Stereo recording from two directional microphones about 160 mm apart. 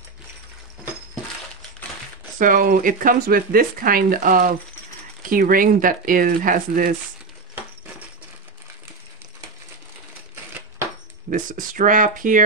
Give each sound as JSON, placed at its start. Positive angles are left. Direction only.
{"t": 2.3, "sound": "speech", "side_deg": -55}
{"t": 11.2, "sound": "speech", "side_deg": -55}